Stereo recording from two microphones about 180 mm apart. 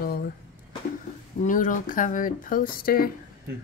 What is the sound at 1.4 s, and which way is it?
Speech, 45° left (ahead or behind).